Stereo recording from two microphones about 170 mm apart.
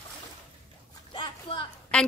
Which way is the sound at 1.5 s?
35° left (ahead or behind).